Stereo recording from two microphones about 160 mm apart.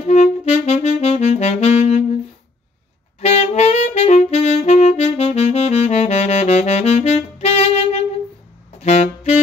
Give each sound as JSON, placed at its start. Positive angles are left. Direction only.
{"t": 0.0, "sound": "saxophone", "side_deg": 45}
{"t": 3.2, "sound": "saxophone", "side_deg": 40}